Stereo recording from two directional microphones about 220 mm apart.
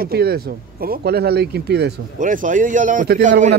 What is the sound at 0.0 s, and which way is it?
Speech, 45° right (ahead or behind).